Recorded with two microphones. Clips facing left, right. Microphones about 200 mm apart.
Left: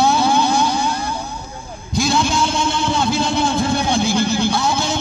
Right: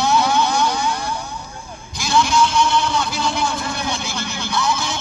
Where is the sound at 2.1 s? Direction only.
25° left (ahead or behind).